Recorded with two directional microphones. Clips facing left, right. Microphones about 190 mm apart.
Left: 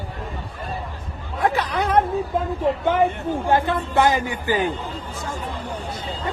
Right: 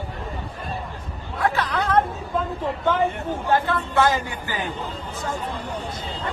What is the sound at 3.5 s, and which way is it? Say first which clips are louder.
Speech: left 1 dB; 20° left (ahead or behind).